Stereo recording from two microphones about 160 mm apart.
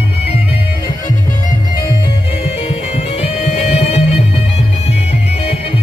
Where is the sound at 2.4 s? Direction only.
40° left (ahead or behind).